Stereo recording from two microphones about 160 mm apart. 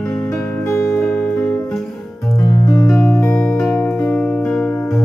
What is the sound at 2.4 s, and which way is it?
Music, 15° left (ahead or behind).